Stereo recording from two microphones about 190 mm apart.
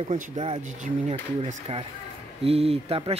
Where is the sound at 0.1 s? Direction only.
40° right (ahead or behind).